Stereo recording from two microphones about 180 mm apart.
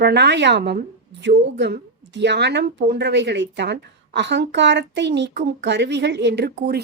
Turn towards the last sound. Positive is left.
turn(degrees=-65)  # may be behind; listen again after turning